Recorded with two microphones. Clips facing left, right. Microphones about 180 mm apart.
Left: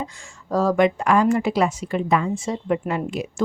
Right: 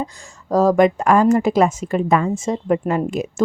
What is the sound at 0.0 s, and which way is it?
Speech, 40° right (ahead or behind).